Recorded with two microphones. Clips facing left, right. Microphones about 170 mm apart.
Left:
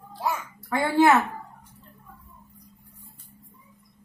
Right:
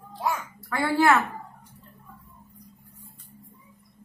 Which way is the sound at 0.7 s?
20° left (ahead or behind).